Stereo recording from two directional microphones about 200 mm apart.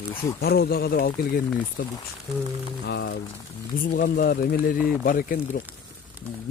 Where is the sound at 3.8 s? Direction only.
45° left (ahead or behind).